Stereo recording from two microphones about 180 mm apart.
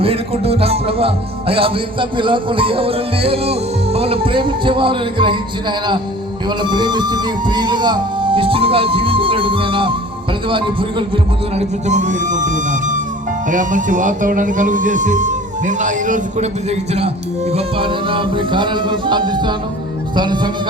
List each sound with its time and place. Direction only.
0.0 s music: 35° right (ahead or behind)
6.6 s speech: 25° right (ahead or behind)
11.5 s speech: 40° right (ahead or behind); by 20.5 s 25° right (ahead or behind)